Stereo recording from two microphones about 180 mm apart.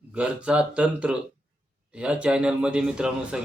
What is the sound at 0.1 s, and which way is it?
Speech, 5° right (ahead or behind).